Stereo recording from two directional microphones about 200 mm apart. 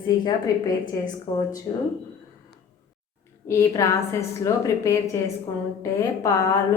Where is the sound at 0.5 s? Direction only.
15° left (ahead or behind).